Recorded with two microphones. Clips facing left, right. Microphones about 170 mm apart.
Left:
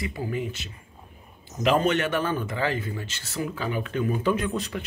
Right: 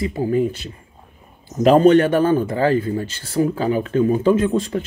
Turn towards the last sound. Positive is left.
turn(degrees=-30)  # may be behind; listen again after turning